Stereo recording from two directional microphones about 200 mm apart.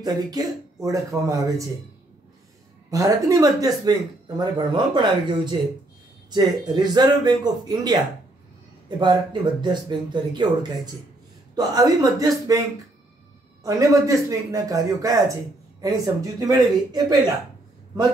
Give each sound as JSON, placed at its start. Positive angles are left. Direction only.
{"t": 0.0, "sound": "speech", "side_deg": -20}
{"t": 2.9, "sound": "speech", "side_deg": -15}
{"t": 9.0, "sound": "speech", "side_deg": -20}
{"t": 11.5, "sound": "speech", "side_deg": -20}
{"t": 13.7, "sound": "speech", "side_deg": -15}